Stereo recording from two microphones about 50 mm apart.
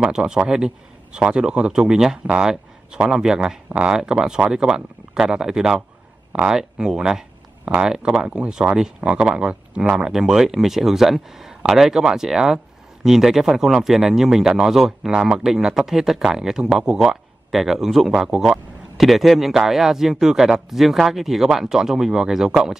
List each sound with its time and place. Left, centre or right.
0.0 s a man's voice: centre
3.6 s a man's voice: right